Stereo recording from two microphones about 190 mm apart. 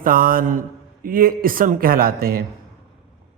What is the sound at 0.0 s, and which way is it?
Speech, 50° right (ahead or behind).